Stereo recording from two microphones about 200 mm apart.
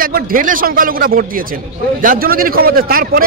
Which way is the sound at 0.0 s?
45° right (ahead or behind).